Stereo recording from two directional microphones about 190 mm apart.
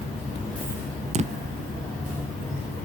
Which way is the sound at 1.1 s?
35° right (ahead or behind).